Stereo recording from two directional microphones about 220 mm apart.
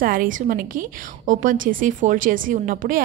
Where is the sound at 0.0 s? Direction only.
40° right (ahead or behind).